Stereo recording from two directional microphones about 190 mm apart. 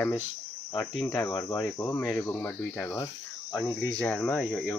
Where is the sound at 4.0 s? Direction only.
10° left (ahead or behind).